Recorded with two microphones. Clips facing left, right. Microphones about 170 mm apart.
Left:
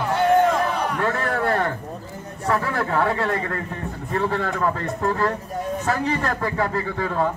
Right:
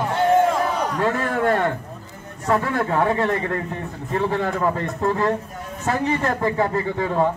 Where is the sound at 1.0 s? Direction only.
15° right (ahead or behind).